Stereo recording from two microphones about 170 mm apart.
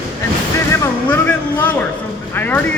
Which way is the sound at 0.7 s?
10° left (ahead or behind).